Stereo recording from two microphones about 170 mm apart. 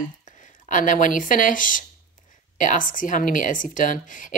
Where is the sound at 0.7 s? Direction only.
50° left (ahead or behind).